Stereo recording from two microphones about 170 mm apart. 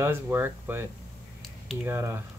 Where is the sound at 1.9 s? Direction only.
15° right (ahead or behind).